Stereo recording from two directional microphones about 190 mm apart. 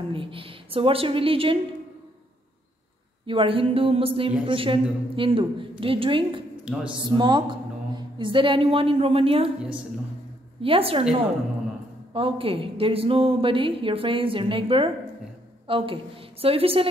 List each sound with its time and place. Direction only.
0.1 s a woman's voice: 25° right (ahead or behind)
3.3 s a woman's voice: 30° right (ahead or behind)
6.6 s a man's voice: 5° right (ahead or behind)
7.0 s a woman's voice: 25° right (ahead or behind)
10.6 s a woman's voice: 30° right (ahead or behind)